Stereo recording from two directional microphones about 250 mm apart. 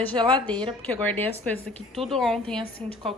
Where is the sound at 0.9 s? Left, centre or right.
Centre.